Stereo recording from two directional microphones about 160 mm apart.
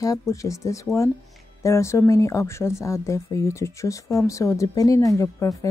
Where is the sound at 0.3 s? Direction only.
20° left (ahead or behind).